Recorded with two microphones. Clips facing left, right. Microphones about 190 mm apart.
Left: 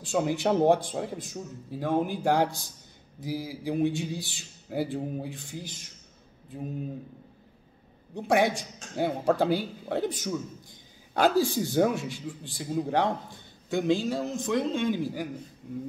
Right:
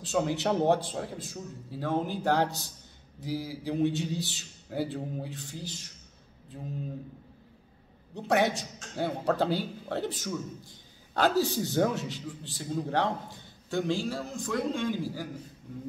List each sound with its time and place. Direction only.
0.0 s a man's voice: 10° left (ahead or behind)
8.1 s a man's voice: 10° left (ahead or behind)